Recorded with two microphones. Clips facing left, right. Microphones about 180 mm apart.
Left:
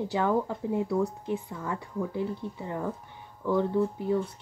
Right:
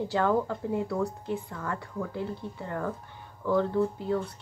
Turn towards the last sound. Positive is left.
turn(degrees=15)  # may be behind; listen again after turning